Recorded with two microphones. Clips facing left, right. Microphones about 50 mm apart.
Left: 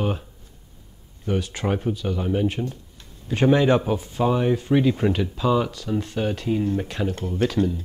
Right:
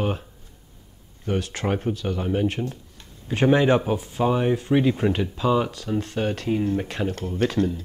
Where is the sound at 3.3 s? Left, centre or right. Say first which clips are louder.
Even; right.